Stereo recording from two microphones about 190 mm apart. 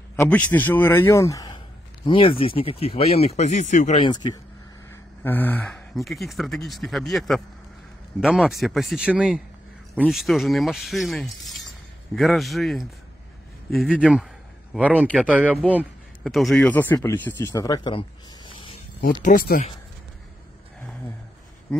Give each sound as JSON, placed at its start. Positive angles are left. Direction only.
{"t": 0.1, "sound": "a sound", "side_deg": 10}
{"t": 0.5, "sound": "speech", "side_deg": 10}
{"t": 4.1, "sound": "speech", "side_deg": 20}
{"t": 5.2, "sound": "a man's voice", "side_deg": 10}
{"t": 16.9, "sound": "speech", "side_deg": 15}
{"t": 19.2, "sound": "speech", "side_deg": 45}